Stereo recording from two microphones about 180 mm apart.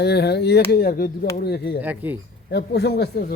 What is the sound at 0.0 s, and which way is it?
Speech, 65° left (ahead or behind).